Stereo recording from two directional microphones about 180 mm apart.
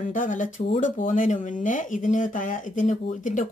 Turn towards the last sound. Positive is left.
turn(degrees=45)  # may be behind; listen again after turning